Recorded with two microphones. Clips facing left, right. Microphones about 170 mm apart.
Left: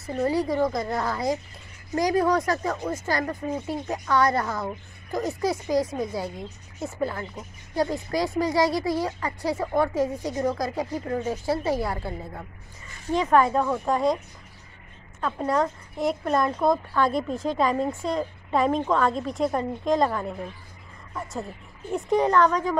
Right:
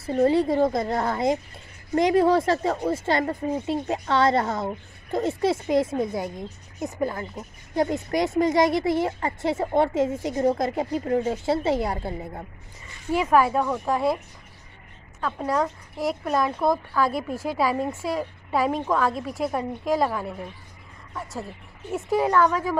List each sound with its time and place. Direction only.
0.0 s speech: 30° right (ahead or behind)
13.1 s speech: 10° right (ahead or behind)